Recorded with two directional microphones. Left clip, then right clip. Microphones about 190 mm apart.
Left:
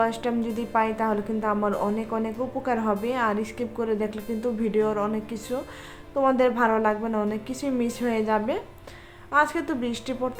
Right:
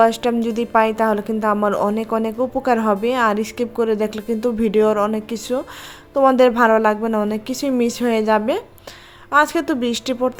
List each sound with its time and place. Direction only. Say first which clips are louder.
0.0 s a woman's voice: right 9 dB; 45° right (ahead or behind)